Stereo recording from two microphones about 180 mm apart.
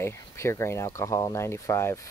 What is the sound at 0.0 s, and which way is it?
Speech, 15° left (ahead or behind).